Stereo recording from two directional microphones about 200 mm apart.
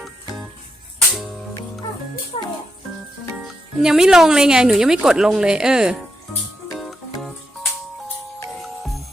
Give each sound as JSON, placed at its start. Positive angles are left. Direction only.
{"t": 2.3, "sound": "music", "side_deg": 30}
{"t": 3.4, "sound": "speech", "side_deg": -5}
{"t": 6.7, "sound": "music", "side_deg": 0}